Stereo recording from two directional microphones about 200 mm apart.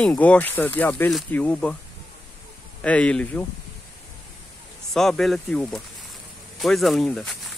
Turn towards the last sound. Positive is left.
turn(degrees=0)  # may be behind; listen again after turning